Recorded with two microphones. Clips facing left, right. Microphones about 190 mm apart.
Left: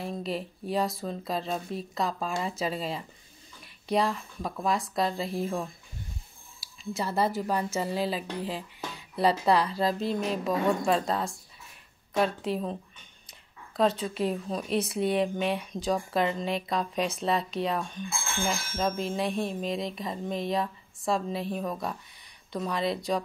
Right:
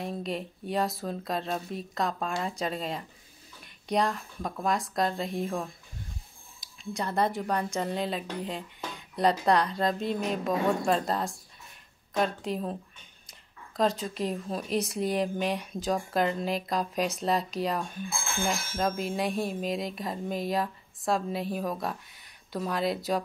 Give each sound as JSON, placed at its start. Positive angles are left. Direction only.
{"t": 0.0, "sound": "speech", "side_deg": 0}